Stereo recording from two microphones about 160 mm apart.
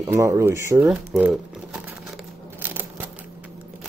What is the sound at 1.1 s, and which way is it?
Crumpling, 5° right (ahead or behind).